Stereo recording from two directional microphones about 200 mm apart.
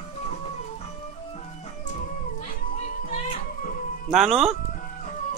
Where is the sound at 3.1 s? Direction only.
40° left (ahead or behind).